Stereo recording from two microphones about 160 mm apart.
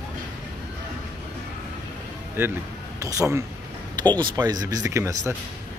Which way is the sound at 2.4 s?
15° right (ahead or behind).